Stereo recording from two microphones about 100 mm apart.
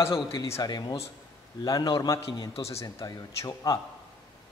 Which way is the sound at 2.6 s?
30° left (ahead or behind).